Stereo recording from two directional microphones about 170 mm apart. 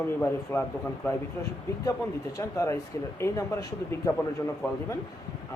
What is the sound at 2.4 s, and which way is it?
Speech, 15° left (ahead or behind).